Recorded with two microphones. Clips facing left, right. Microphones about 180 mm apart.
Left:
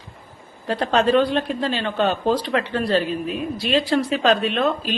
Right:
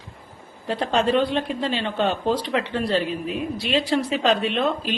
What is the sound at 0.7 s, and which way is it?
Speech, 20° right (ahead or behind).